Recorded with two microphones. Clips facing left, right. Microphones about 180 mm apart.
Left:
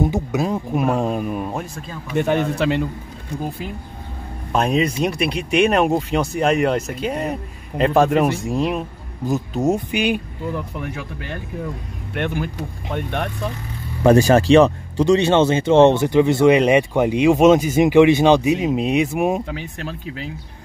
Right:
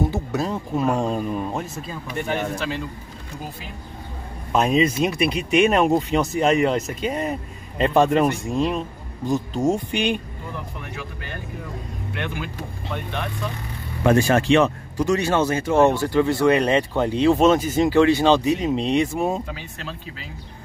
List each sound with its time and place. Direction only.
0.1 s speech: 10° left (ahead or behind)
2.1 s a man's voice: 70° left (ahead or behind)
4.5 s speech: centre (ahead or behind)
12.9 s speech: 65° left (ahead or behind)
14.0 s speech: 35° left (ahead or behind); by 19.4 s 15° left (ahead or behind)